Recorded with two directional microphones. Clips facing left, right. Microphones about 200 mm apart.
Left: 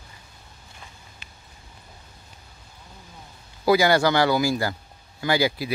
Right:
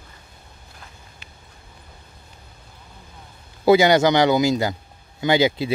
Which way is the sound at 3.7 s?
20° right (ahead or behind).